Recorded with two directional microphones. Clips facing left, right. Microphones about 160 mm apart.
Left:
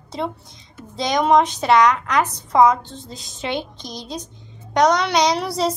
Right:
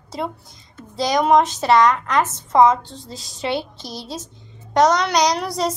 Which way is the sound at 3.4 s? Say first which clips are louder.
Right 2 dB; 5° right (ahead or behind).